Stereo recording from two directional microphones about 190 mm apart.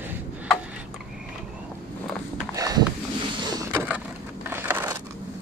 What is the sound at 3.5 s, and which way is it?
Vehicle, 10° right (ahead or behind).